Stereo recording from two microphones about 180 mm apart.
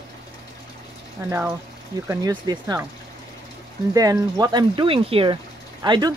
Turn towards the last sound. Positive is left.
turn(degrees=-25)  # may be behind; listen again after turning